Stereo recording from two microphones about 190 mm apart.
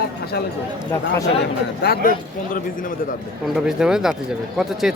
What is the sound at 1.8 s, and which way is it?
Speech, 50° left (ahead or behind).